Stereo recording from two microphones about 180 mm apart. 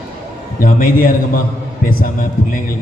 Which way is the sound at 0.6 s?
50° left (ahead or behind).